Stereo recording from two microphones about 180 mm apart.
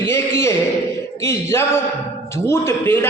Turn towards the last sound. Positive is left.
turn(degrees=10)  # may be behind; listen again after turning